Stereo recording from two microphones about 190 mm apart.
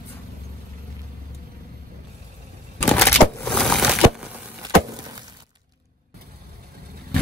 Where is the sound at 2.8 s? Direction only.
10° left (ahead or behind); by 4.4 s 5° right (ahead or behind).